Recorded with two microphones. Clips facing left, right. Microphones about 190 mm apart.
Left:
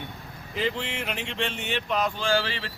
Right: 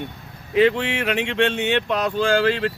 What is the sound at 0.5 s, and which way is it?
Speech, 70° right (ahead or behind).